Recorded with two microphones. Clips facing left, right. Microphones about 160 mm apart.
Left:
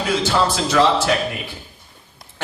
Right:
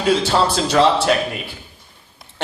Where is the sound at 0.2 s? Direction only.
30° right (ahead or behind).